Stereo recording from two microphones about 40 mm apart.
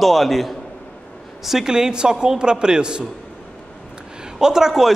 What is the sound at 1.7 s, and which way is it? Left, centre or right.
A man's voice, centre.